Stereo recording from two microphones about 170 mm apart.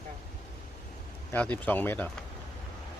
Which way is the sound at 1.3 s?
10° left (ahead or behind).